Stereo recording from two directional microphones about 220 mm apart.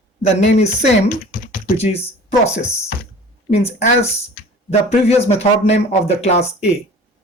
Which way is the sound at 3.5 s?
30° left (ahead or behind).